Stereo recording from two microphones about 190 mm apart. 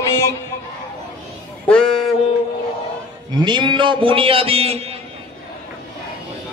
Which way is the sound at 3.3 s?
25° right (ahead or behind).